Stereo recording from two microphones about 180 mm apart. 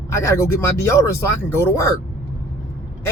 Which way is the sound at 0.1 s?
15° left (ahead or behind).